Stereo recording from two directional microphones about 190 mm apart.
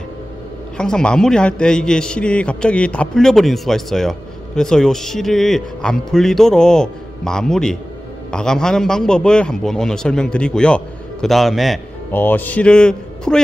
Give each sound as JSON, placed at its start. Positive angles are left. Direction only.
{"t": 0.7, "sound": "a man's voice", "side_deg": 5}